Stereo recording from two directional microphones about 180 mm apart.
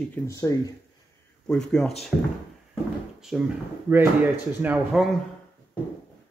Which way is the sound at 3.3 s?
5° right (ahead or behind).